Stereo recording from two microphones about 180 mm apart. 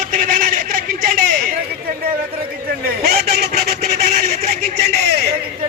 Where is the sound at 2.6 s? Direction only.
60° right (ahead or behind).